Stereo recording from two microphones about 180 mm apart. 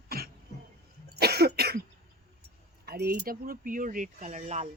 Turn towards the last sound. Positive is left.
turn(degrees=-40)  # may be behind; listen again after turning